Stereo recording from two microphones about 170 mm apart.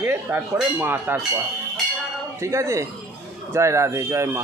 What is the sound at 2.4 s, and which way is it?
Speech, 15° right (ahead or behind).